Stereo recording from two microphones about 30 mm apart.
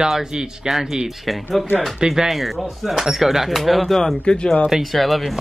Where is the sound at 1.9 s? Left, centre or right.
Centre.